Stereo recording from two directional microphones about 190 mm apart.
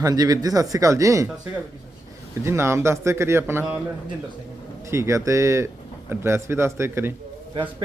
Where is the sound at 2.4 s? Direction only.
15° right (ahead or behind).